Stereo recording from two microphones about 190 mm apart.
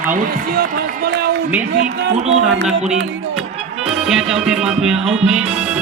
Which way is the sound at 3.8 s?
5° right (ahead or behind).